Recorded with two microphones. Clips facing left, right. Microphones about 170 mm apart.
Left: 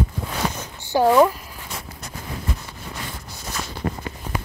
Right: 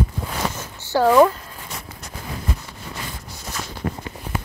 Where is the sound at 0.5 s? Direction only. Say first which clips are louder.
Even; 15° left (ahead or behind).